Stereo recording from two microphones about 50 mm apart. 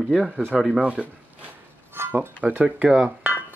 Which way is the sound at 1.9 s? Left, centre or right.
Right.